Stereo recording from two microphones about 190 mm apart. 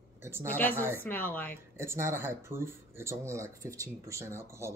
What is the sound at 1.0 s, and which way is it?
Speech, 10° left (ahead or behind).